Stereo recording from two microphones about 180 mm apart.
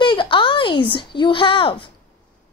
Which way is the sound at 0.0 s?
25° left (ahead or behind).